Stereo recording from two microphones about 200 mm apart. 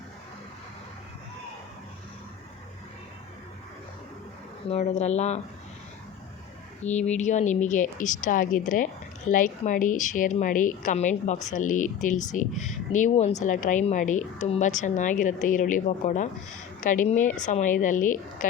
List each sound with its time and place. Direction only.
4.7 s a woman's voice: 30° left (ahead or behind)
6.8 s a woman's voice: 35° left (ahead or behind)